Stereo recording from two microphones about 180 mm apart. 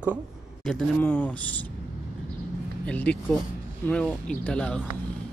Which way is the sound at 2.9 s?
5° left (ahead or behind).